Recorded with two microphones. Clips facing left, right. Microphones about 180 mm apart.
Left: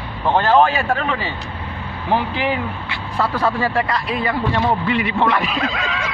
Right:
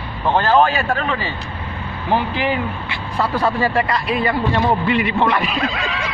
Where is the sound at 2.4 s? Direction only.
Centre (ahead or behind).